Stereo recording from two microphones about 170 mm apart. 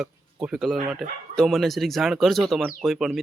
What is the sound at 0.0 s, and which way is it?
Speech, 5° right (ahead or behind).